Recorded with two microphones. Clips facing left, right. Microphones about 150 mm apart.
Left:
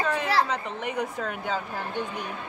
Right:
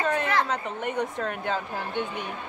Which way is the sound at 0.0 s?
Centre (ahead or behind).